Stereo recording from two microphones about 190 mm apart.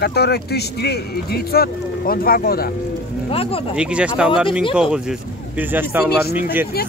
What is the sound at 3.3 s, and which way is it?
Speech, 30° left (ahead or behind).